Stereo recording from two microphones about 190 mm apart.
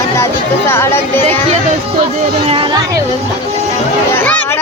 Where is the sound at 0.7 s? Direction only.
15° left (ahead or behind).